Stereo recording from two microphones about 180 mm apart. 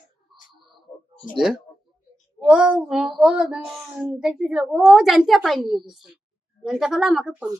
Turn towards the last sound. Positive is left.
turn(degrees=-5)  # may be behind; listen again after turning